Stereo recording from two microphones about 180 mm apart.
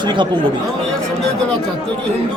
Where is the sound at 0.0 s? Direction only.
25° right (ahead or behind).